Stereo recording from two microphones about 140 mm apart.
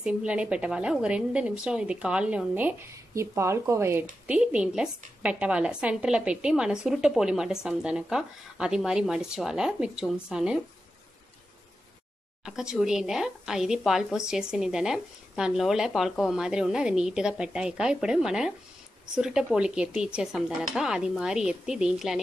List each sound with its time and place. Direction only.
0.0 s a woman's voice: 10° right (ahead or behind)
4.3 s a woman's voice: 10° right (ahead or behind)
12.4 s a woman's voice: 5° right (ahead or behind)